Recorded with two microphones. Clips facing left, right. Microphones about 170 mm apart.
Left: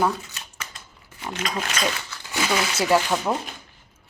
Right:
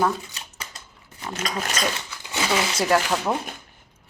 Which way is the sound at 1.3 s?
40° right (ahead or behind).